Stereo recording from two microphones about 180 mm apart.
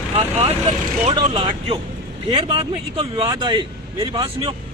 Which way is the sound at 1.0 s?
30° right (ahead or behind).